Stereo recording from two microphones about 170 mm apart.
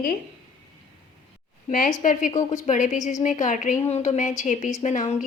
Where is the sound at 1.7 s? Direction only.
50° left (ahead or behind).